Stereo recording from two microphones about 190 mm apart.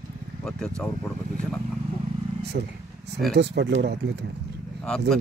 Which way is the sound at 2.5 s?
55° right (ahead or behind).